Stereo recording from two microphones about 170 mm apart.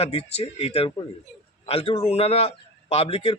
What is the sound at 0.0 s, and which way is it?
A man's voice, 35° left (ahead or behind).